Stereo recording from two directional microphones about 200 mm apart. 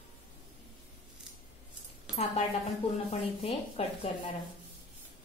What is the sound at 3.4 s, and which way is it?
Speech, 30° left (ahead or behind).